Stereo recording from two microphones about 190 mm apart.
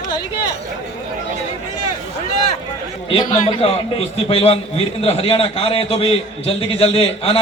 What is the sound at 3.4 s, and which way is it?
A man's voice, 30° left (ahead or behind).